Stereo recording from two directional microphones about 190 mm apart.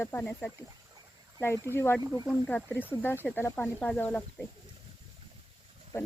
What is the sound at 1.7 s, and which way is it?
Speech, 15° left (ahead or behind).